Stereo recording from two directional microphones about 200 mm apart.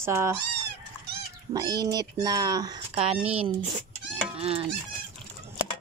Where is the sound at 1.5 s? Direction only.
20° right (ahead or behind).